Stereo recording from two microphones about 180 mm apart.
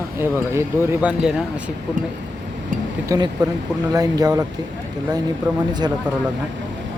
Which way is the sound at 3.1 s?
15° right (ahead or behind).